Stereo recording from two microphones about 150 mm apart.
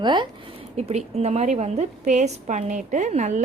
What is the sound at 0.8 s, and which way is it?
A woman's voice, 45° right (ahead or behind).